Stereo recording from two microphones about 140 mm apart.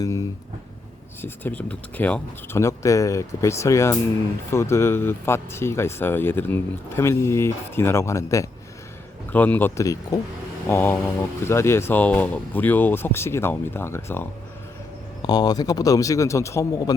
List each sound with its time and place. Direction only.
0.0 s speech: 25° left (ahead or behind)
1.2 s speech: 15° left (ahead or behind)
15.2 s speech: 30° left (ahead or behind)